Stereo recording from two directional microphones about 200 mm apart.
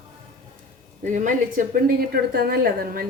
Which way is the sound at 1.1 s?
40° right (ahead or behind).